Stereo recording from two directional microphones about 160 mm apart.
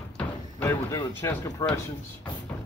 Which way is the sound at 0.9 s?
20° left (ahead or behind).